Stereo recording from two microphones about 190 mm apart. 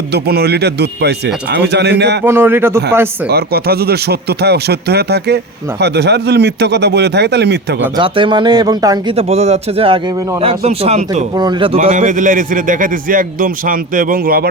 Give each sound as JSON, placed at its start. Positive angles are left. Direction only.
{"t": 0.1, "sound": "speech", "side_deg": -60}
{"t": 2.2, "sound": "speech", "side_deg": -10}
{"t": 3.2, "sound": "speech", "side_deg": -55}
{"t": 7.9, "sound": "speech", "side_deg": -25}
{"t": 9.1, "sound": "a man's voice", "side_deg": -35}
{"t": 11.3, "sound": "a man's voice", "side_deg": -25}